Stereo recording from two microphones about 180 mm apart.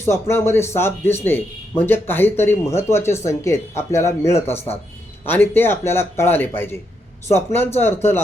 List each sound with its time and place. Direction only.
0.0 s speech: 15° left (ahead or behind)
4.4 s speech: 35° left (ahead or behind)
5.2 s speech: 10° left (ahead or behind)